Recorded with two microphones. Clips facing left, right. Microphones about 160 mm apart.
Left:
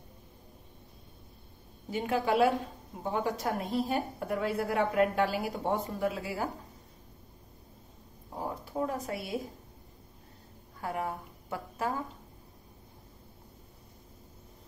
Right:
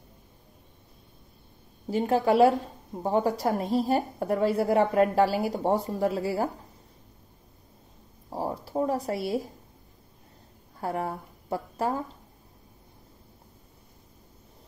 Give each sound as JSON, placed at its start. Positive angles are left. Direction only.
{"t": 1.9, "sound": "a woman's voice", "side_deg": -35}
{"t": 8.3, "sound": "speech", "side_deg": -35}
{"t": 10.8, "sound": "speech", "side_deg": -35}